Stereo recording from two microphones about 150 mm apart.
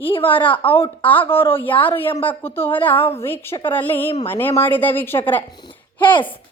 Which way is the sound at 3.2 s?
15° left (ahead or behind).